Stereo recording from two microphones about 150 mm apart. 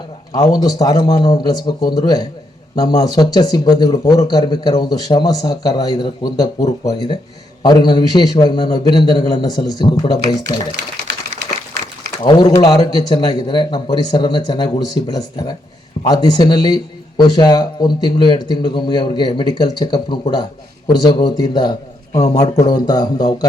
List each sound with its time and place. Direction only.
0.3 s a man's voice: 25° left (ahead or behind)
12.2 s a man's voice: 30° left (ahead or behind)